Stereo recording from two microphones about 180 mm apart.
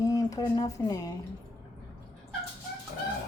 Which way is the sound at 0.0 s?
15° left (ahead or behind).